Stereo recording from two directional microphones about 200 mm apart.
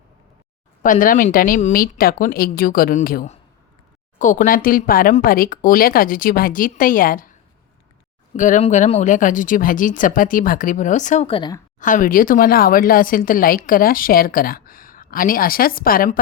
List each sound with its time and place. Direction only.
0.8 s speech: 40° left (ahead or behind)
8.3 s speech: 40° left (ahead or behind); by 11.6 s 20° left (ahead or behind)
11.8 s speech: 40° left (ahead or behind)